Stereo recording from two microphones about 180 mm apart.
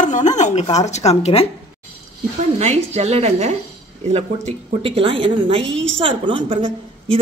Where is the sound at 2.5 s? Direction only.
35° right (ahead or behind).